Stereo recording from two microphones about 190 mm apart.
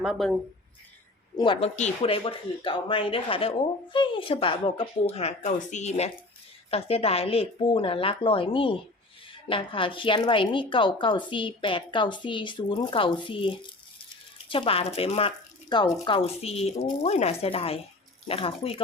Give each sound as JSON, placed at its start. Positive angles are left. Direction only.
{"t": 0.0, "sound": "speech", "side_deg": 0}
{"t": 1.4, "sound": "a woman's voice", "side_deg": 25}